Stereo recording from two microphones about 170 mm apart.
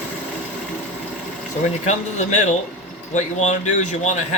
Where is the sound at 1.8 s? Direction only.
45° left (ahead or behind).